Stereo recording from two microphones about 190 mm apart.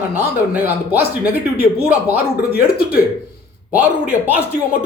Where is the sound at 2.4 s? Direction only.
50° left (ahead or behind).